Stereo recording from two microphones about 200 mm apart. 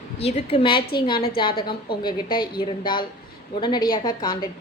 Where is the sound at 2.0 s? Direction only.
20° left (ahead or behind).